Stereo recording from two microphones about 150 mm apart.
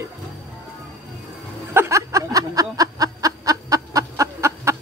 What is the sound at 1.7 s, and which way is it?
Snicker, 20° right (ahead or behind).